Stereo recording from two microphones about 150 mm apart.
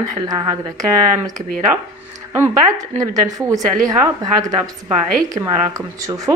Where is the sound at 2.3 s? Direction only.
20° right (ahead or behind).